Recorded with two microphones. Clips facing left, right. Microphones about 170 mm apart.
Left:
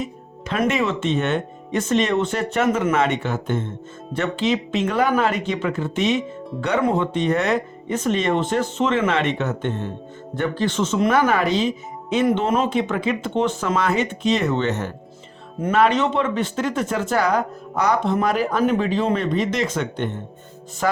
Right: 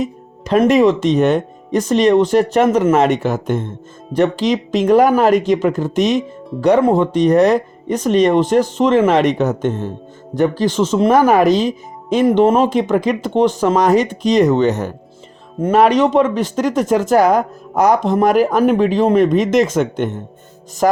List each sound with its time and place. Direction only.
0.0 s music: 40° right (ahead or behind)
0.6 s speech: 35° right (ahead or behind)
12.1 s speech: 30° right (ahead or behind)